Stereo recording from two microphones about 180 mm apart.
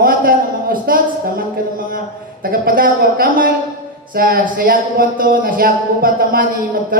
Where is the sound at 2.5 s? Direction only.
50° right (ahead or behind).